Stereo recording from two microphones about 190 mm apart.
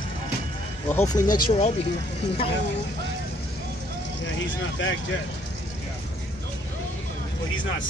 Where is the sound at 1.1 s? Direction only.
45° left (ahead or behind).